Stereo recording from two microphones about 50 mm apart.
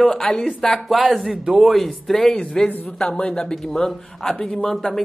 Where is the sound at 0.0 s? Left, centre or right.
Centre.